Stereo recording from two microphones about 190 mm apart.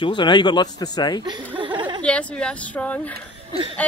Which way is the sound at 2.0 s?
5° left (ahead or behind).